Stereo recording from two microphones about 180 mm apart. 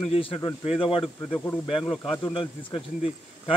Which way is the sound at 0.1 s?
30° left (ahead or behind).